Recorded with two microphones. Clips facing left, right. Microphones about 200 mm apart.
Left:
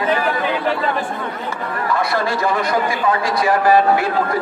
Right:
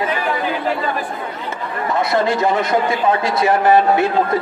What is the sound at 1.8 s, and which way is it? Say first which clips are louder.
A man's voice: right 3 dB; 20° right (ahead or behind).